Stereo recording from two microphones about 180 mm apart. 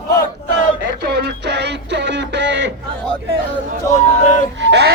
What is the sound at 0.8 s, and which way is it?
Music, 65° right (ahead or behind).